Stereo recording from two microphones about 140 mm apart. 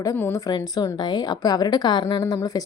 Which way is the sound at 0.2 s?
20° left (ahead or behind).